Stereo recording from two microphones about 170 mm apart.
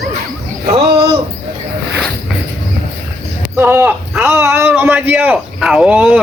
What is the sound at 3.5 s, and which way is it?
A man's voice, 15° right (ahead or behind).